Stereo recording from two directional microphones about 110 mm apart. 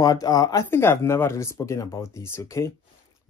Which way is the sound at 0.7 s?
20° left (ahead or behind).